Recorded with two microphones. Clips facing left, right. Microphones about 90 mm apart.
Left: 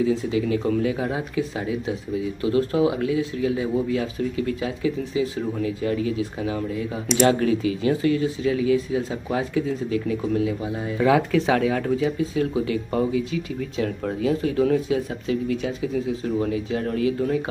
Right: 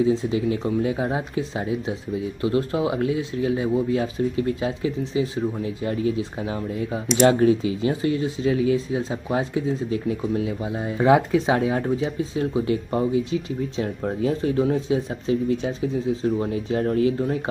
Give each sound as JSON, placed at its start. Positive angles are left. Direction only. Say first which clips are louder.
{"t": 0.0, "sound": "speech", "louder": "right 1 dB", "side_deg": -30}